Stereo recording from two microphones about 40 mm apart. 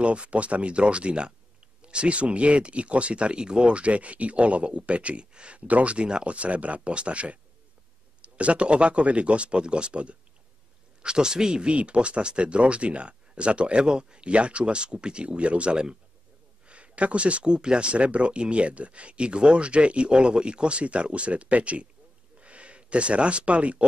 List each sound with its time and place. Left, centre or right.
0.0 s speech: right